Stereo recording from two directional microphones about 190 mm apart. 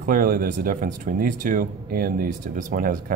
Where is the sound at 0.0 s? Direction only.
50° right (ahead or behind).